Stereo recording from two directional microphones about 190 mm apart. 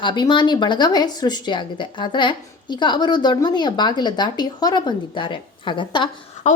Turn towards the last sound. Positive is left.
turn(degrees=35)  # may be behind; listen again after turning